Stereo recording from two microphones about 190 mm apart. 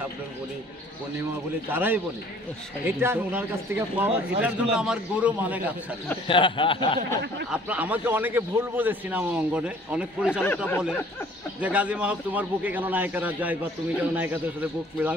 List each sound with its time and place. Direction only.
1.7 s speech: 10° right (ahead or behind)
6.2 s speech: 25° left (ahead or behind)
7.5 s speech: 10° right (ahead or behind)
11.6 s speech: 5° right (ahead or behind)